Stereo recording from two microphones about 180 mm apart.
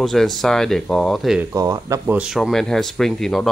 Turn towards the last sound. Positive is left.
turn(degrees=0)  # may be behind; listen again after turning